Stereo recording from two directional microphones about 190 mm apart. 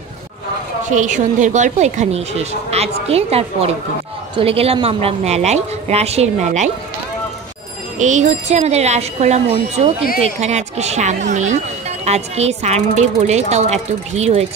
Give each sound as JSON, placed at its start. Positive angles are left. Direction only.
{"t": 0.8, "sound": "speech", "side_deg": -40}
{"t": 8.0, "sound": "speech", "side_deg": -40}